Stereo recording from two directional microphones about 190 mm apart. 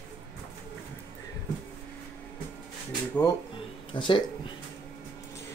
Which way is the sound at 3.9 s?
25° left (ahead or behind).